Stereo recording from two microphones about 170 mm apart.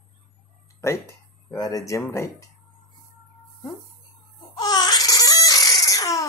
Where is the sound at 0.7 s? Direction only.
15° left (ahead or behind).